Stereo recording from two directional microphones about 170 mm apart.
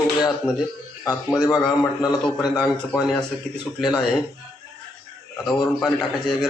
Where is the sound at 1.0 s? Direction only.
20° left (ahead or behind).